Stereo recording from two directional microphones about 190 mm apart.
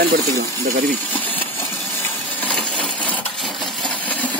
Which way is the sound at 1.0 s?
10° left (ahead or behind).